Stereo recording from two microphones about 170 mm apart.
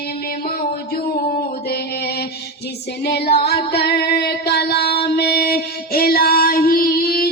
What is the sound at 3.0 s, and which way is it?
Music, 70° left (ahead or behind).